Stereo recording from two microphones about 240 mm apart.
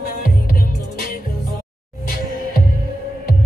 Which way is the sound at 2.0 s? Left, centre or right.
Left.